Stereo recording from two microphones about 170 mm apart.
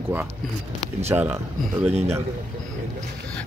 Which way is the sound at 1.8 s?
40° right (ahead or behind).